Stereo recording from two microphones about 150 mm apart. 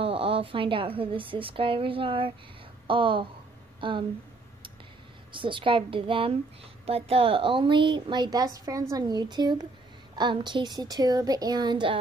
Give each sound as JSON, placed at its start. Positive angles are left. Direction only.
{"t": 0.0, "sound": "a woman's voice", "side_deg": -35}
{"t": 5.3, "sound": "a woman's voice", "side_deg": -35}